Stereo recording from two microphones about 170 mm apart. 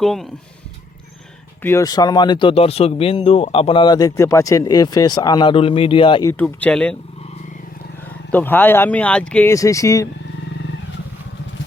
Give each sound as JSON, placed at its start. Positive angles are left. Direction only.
{"t": 0.0, "sound": "speech", "side_deg": 0}
{"t": 1.6, "sound": "speech", "side_deg": 20}
{"t": 6.2, "sound": "speech", "side_deg": 10}
{"t": 8.3, "sound": "speech", "side_deg": 10}